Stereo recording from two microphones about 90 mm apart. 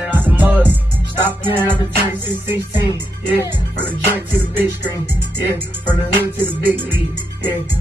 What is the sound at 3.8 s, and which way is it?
Music, 20° right (ahead or behind).